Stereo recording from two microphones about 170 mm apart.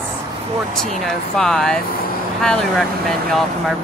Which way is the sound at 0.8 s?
5° left (ahead or behind).